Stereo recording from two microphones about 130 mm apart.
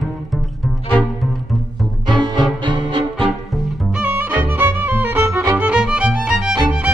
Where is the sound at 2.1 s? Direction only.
35° right (ahead or behind).